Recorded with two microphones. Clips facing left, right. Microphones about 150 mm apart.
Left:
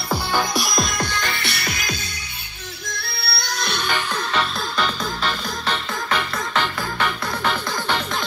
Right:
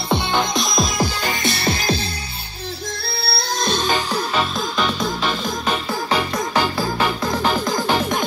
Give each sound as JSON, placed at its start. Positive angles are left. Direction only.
{"t": 0.1, "sound": "music", "side_deg": -20}
{"t": 0.7, "sound": "music", "side_deg": 0}
{"t": 1.5, "sound": "music", "side_deg": -25}
{"t": 5.0, "sound": "music", "side_deg": -15}
{"t": 6.5, "sound": "music", "side_deg": -35}